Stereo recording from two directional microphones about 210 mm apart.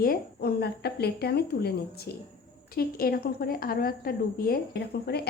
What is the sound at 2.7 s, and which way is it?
A woman's voice, 45° left (ahead or behind).